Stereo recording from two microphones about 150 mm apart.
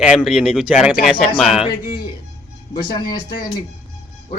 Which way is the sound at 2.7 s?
90° left.